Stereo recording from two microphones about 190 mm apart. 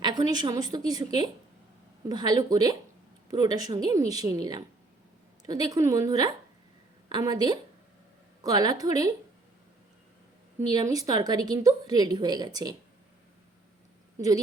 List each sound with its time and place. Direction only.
0.0 s a woman's voice: 20° right (ahead or behind)
10.7 s a woman's voice: 20° right (ahead or behind)
14.2 s a woman's voice: 20° right (ahead or behind)